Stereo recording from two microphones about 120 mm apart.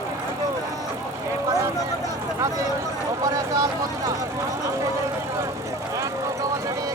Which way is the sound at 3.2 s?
25° right (ahead or behind).